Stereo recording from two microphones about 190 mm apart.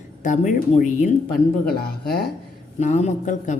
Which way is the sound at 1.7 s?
55° left (ahead or behind).